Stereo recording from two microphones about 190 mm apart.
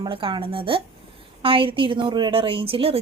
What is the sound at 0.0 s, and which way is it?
A woman's voice, 25° right (ahead or behind).